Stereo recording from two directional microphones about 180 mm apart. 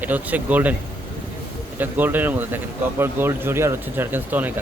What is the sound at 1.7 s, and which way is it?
Speech, 10° right (ahead or behind).